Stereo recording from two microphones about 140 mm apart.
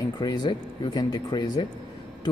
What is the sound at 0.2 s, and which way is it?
Speech, 30° left (ahead or behind).